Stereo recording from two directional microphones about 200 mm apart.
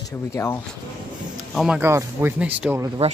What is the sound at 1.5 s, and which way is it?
Speech, 5° right (ahead or behind).